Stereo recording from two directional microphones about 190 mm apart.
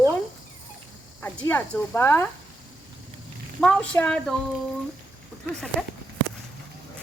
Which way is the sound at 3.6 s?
5° left (ahead or behind).